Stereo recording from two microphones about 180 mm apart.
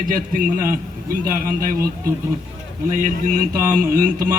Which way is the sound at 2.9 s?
45° right (ahead or behind).